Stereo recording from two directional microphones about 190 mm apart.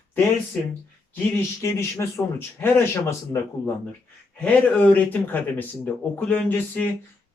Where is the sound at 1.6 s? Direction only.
15° left (ahead or behind).